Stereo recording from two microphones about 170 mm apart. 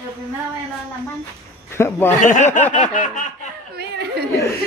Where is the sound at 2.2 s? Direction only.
50° left (ahead or behind).